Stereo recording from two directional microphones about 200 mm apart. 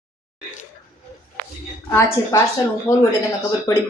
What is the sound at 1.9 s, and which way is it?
A woman's voice, 15° left (ahead or behind).